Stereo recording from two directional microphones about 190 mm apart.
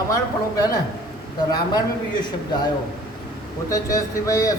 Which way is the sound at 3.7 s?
15° left (ahead or behind).